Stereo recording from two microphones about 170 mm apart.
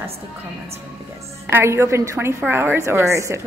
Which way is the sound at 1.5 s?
15° right (ahead or behind).